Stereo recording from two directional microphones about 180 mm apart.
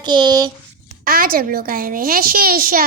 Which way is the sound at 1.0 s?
55° right (ahead or behind).